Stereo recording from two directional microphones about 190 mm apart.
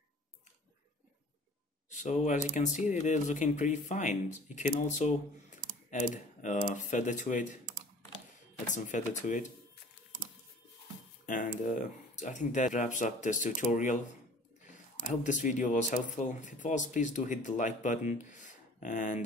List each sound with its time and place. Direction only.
1.9 s speech: 40° left (ahead or behind)
8.7 s speech: 40° left (ahead or behind)
11.2 s speech: 45° left (ahead or behind)
15.0 s speech: 40° left (ahead or behind)